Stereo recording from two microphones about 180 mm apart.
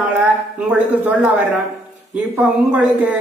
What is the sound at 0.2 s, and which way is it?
A man's voice, 5° right (ahead or behind).